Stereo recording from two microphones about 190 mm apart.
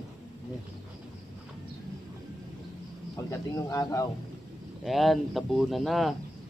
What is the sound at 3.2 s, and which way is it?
Speech, 15° left (ahead or behind).